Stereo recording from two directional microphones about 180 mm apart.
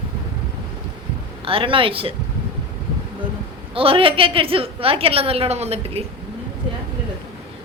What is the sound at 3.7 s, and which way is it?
Speech, 30° right (ahead or behind).